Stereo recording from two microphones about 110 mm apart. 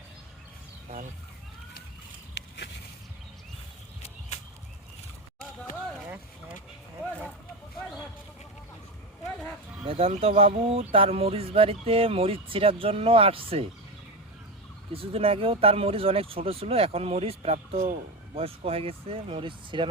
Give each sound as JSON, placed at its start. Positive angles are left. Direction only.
{"t": 9.8, "sound": "speech", "side_deg": -60}
{"t": 14.9, "sound": "speech", "side_deg": -60}